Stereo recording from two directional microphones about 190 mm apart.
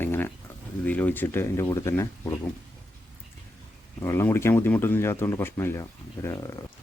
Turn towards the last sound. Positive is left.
turn(degrees=15)  # may be behind; listen again after turning